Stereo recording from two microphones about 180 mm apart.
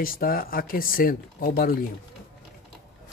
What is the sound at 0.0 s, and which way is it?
Speech, 55° left (ahead or behind).